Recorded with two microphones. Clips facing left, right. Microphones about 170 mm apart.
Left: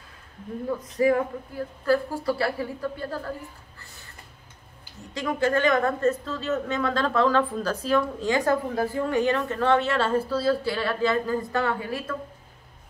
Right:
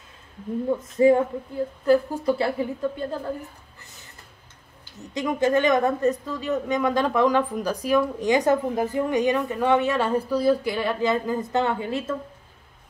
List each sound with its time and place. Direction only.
0.7 s a woman's voice: 25° right (ahead or behind)
5.1 s speech: 20° right (ahead or behind)